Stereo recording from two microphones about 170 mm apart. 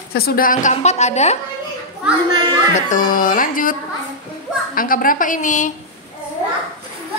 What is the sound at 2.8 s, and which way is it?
A woman's voice, 50° left (ahead or behind).